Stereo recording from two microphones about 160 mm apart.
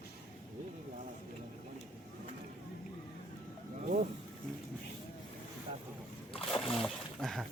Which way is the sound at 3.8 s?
55° right (ahead or behind).